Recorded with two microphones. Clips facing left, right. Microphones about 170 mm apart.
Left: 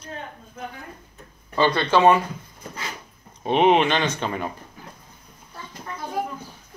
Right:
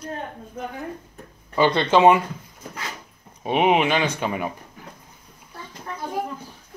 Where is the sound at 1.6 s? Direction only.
20° right (ahead or behind).